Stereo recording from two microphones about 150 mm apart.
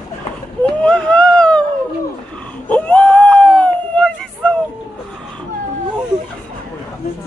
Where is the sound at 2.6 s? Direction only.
10° left (ahead or behind).